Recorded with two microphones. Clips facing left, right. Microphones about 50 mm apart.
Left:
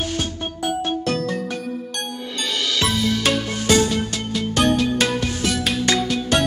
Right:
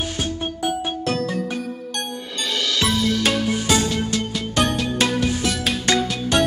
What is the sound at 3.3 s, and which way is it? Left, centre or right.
Music, centre.